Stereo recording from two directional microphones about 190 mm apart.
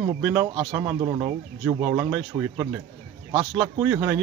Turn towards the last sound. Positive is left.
turn(degrees=-10)  # may be behind; listen again after turning